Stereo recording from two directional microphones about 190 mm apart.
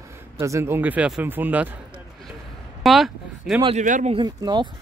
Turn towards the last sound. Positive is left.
turn(degrees=-20)  # may be behind; listen again after turning